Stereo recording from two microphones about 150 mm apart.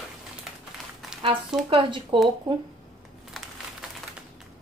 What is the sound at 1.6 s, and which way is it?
Speech, 35° right (ahead or behind).